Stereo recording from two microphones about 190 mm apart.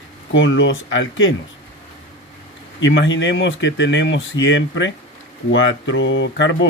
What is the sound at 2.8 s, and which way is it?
Speech, 75° left (ahead or behind).